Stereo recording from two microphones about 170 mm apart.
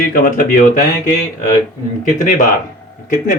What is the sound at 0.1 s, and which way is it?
Speech, 55° left (ahead or behind).